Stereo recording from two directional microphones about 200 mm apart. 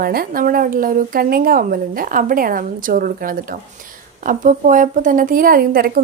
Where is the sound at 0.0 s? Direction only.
45° right (ahead or behind).